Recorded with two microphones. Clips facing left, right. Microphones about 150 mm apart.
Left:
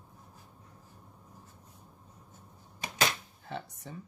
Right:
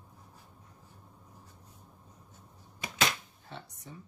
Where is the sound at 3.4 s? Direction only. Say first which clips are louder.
Left 6 dB; 65° left (ahead or behind).